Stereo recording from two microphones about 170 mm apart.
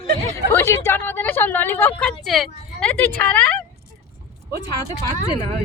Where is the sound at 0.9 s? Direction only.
10° left (ahead or behind).